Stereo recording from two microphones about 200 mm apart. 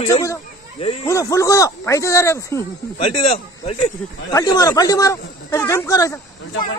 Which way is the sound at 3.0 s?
30° left (ahead or behind).